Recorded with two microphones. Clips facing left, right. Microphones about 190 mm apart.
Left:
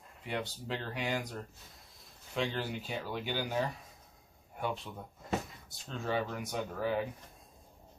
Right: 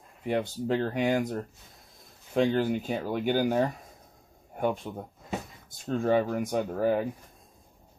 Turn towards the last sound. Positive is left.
turn(degrees=-50)  # may be behind; listen again after turning